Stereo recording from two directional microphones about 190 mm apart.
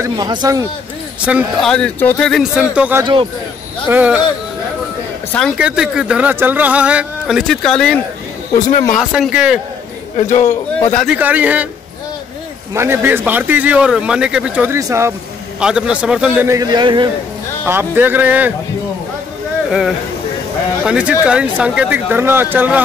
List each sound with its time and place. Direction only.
0.0 s speech: 20° right (ahead or behind)
1.2 s speech: 5° right (ahead or behind)
5.6 s speech: 5° right (ahead or behind)
8.5 s speech: 40° left (ahead or behind)
8.9 s speech: centre (ahead or behind)
10.3 s a man's voice: 15° left (ahead or behind)
11.1 s speech: 10° right (ahead or behind)
12.7 s speech: 15° right (ahead or behind)
15.6 s speech: 5° right (ahead or behind); by 17.1 s 25° right (ahead or behind)
17.6 s speech: 10° right (ahead or behind)
20.8 s speech: 5° right (ahead or behind)